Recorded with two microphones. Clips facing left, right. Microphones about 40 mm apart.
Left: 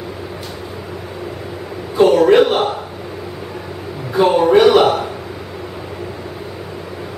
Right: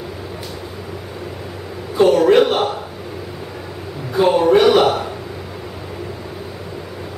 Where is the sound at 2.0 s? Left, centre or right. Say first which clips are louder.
Left 2 dB; centre.